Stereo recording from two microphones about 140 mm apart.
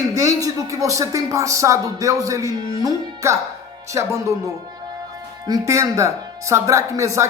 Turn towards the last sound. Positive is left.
turn(degrees=-20)  # may be behind; listen again after turning